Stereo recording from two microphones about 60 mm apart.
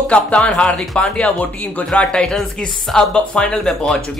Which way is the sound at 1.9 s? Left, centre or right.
Centre.